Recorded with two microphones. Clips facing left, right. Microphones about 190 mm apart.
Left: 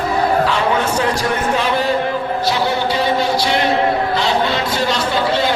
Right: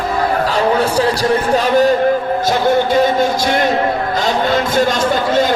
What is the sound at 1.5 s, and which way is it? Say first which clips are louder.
A man's voice: right 6 dB; 40° right (ahead or behind).